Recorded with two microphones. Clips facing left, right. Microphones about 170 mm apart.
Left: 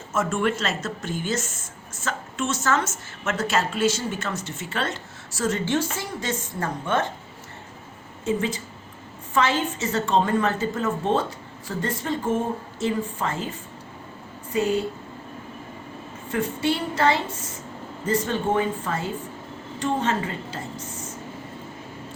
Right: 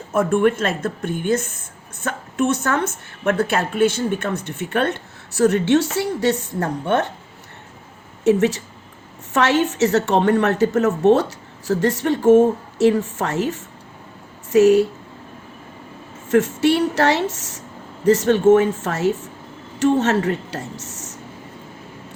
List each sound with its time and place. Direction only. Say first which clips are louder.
0.1 s speech: right 7 dB; 55° right (ahead or behind)
8.2 s a woman's voice: right 9 dB; 75° right (ahead or behind)
16.3 s a woman's voice: right 8 dB; 75° right (ahead or behind)